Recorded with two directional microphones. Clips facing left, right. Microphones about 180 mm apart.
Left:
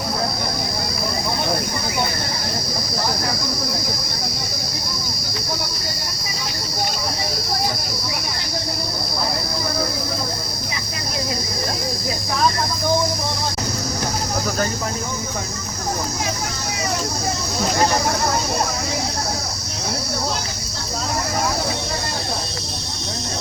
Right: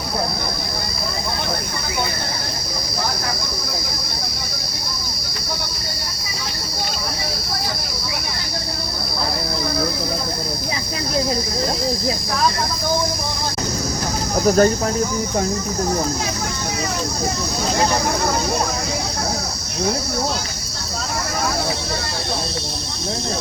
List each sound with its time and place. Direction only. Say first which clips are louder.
14.4 s speech: right 12 dB; 45° right (ahead or behind)